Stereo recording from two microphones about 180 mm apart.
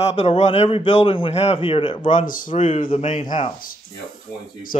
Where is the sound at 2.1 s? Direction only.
45° left (ahead or behind).